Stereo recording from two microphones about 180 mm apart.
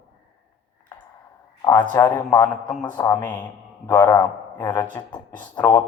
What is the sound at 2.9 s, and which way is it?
A man's voice, 15° left (ahead or behind).